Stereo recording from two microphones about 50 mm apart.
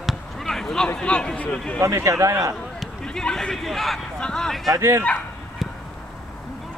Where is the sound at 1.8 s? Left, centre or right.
Right.